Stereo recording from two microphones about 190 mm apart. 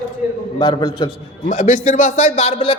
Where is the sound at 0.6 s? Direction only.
25° left (ahead or behind).